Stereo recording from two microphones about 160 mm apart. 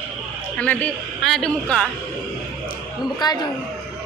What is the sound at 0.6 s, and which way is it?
A man's voice, 10° left (ahead or behind).